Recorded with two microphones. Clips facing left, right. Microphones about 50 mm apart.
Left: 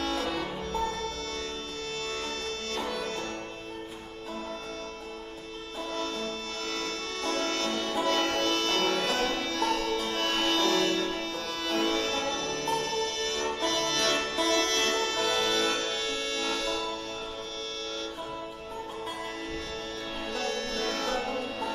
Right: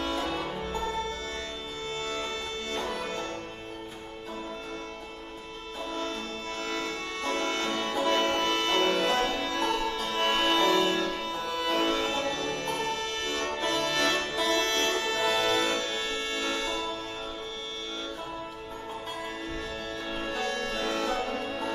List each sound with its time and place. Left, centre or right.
0.0 s music: right
2.9 s music: right
6.7 s music: right
20.2 s music: centre